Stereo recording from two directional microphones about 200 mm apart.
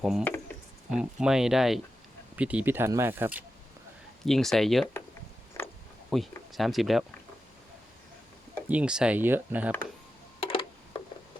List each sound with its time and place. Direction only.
0.0 s speech: centre (ahead or behind)
4.3 s speech: centre (ahead or behind)
6.1 s speech: centre (ahead or behind)
8.6 s speech: 5° right (ahead or behind)
10.4 s a sound: 25° left (ahead or behind)